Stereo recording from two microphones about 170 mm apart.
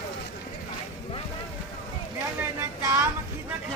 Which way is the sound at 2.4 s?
15° right (ahead or behind).